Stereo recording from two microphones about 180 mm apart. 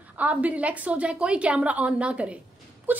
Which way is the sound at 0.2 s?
10° right (ahead or behind).